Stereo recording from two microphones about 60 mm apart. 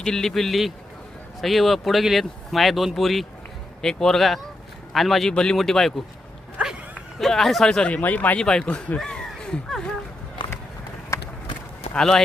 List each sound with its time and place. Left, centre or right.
0.0 s speech: centre
6.6 s dog: centre
7.2 s speech: centre
7.9 s speech: left
8.4 s speech: centre
8.6 s speech: left
9.0 s a sound: centre
11.1 s run: left
11.9 s speech: centre